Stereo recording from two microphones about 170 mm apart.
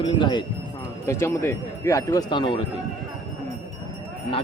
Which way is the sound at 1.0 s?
15° left (ahead or behind).